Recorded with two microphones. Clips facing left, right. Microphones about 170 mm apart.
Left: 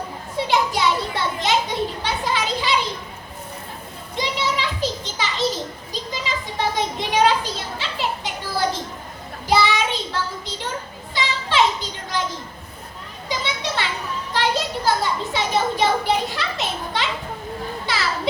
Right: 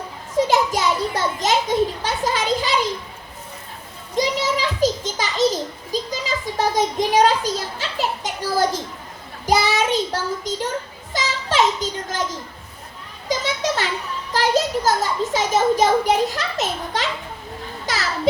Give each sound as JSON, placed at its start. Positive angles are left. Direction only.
{"t": 0.3, "sound": "a child's voice", "side_deg": -45}
{"t": 4.2, "sound": "a sound", "side_deg": -40}
{"t": 9.5, "sound": "child singing", "side_deg": -45}
{"t": 13.2, "sound": "children playing", "side_deg": -45}
{"t": 14.3, "sound": "a child's voice", "side_deg": -45}